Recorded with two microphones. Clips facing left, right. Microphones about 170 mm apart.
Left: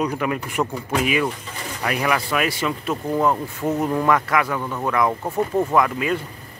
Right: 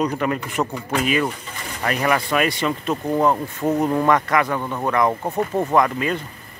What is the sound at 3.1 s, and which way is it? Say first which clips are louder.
Speech: right 1 dB; 10° right (ahead or behind).